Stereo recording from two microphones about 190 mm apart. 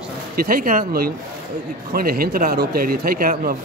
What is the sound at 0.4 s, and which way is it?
Speech, 50° right (ahead or behind).